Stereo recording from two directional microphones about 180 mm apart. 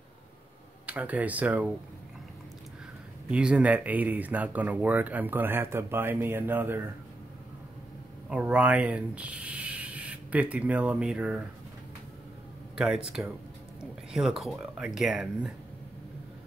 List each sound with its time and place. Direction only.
0.8 s speech: 10° right (ahead or behind)
3.3 s speech: 5° right (ahead or behind)
8.3 s speech: 5° right (ahead or behind)
12.7 s speech: 5° right (ahead or behind)